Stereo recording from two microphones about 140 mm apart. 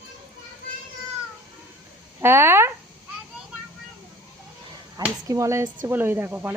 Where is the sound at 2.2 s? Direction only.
15° right (ahead or behind).